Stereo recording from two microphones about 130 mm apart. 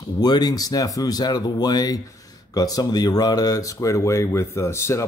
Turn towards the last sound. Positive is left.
turn(degrees=20)  # may be behind; listen again after turning